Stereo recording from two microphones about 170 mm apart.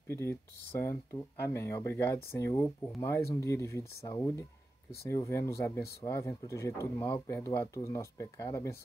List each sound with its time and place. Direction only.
0.1 s speech: 15° left (ahead or behind)